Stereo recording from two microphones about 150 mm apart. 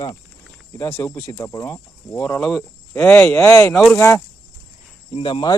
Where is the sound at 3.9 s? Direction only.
15° left (ahead or behind).